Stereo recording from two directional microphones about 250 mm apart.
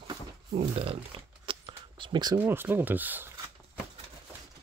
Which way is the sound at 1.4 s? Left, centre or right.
Centre.